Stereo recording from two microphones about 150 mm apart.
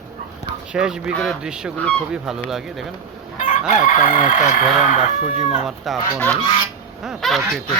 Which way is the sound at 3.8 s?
60° left (ahead or behind).